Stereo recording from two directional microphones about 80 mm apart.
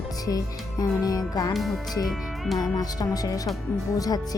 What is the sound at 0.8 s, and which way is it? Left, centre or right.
Speech, left.